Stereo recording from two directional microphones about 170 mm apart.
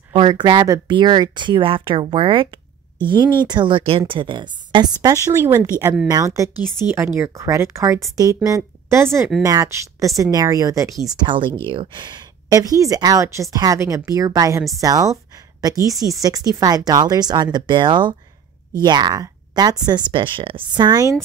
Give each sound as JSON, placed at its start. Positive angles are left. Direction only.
{"t": 0.1, "sound": "a woman's voice", "side_deg": -25}